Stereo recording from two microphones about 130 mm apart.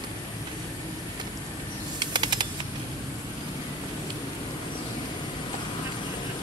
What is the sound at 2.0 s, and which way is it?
Typing, 35° right (ahead or behind).